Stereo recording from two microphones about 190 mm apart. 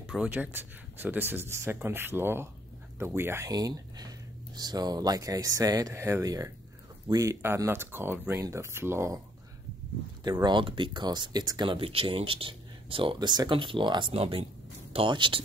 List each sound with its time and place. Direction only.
0.0 s speech: 5° right (ahead or behind)
10.2 s speech: 20° right (ahead or behind)